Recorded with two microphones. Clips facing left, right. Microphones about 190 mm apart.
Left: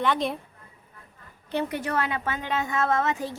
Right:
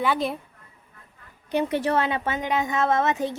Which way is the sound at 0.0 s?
5° right (ahead or behind).